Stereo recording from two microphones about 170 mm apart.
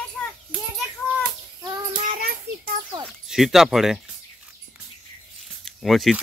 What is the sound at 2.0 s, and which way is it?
Child singing, 60° right (ahead or behind).